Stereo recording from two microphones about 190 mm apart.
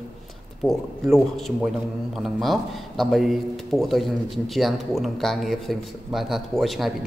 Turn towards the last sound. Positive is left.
turn(degrees=0)  # may be behind; listen again after turning